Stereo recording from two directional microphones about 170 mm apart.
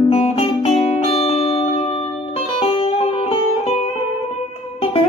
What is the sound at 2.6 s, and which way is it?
Music, 35° left (ahead or behind).